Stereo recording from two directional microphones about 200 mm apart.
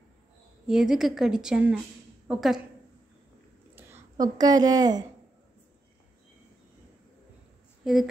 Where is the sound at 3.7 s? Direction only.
10° right (ahead or behind).